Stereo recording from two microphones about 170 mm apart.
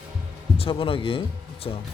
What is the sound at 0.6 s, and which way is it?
Speech, 35° left (ahead or behind).